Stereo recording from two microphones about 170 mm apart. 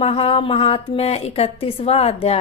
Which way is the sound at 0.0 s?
35° left (ahead or behind).